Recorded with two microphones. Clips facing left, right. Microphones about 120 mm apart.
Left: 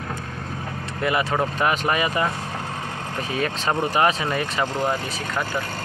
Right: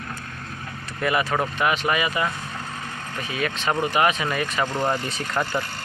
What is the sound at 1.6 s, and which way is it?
Speech, 40° left (ahead or behind).